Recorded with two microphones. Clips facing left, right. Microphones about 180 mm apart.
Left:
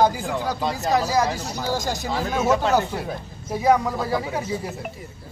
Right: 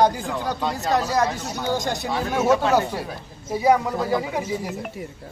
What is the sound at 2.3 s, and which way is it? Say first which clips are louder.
Speech: right 1 dB; 10° right (ahead or behind).